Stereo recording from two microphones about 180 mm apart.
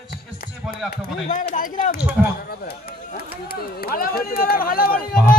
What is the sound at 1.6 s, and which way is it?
Speech, 50° left (ahead or behind).